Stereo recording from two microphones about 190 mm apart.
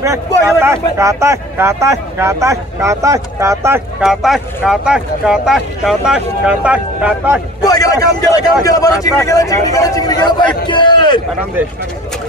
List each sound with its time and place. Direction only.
0.6 s speech: 15° right (ahead or behind)
4.0 s speech: centre (ahead or behind)
7.6 s speech: 20° left (ahead or behind)